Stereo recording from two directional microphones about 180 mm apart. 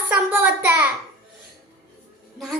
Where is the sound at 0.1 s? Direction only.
10° right (ahead or behind).